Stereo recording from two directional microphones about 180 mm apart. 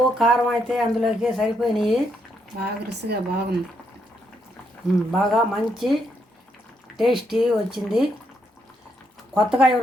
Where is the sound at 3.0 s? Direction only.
65° right (ahead or behind).